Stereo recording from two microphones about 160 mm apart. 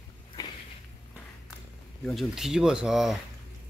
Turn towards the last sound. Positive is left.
turn(degrees=0)  # may be behind; listen again after turning